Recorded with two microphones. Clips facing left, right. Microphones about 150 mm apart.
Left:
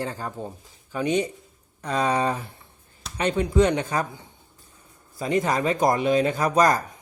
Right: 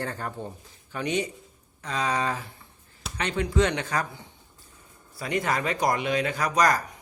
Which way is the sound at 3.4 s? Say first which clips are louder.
Left 4 dB; 20° left (ahead or behind).